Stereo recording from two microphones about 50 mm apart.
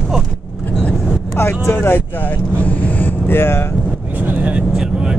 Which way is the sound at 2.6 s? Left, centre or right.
Left.